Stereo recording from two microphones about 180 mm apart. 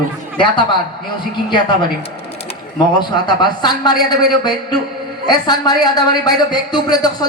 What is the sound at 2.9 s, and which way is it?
A woman's voice, 25° left (ahead or behind).